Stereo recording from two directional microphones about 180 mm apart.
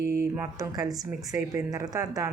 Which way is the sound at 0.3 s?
15° right (ahead or behind).